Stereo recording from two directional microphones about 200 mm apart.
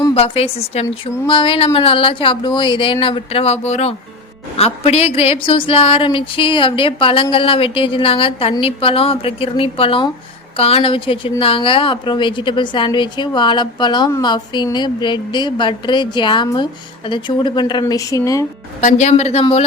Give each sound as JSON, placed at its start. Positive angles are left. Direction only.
{"t": 0.1, "sound": "a woman's voice", "side_deg": 30}
{"t": 18.8, "sound": "a woman's voice", "side_deg": 35}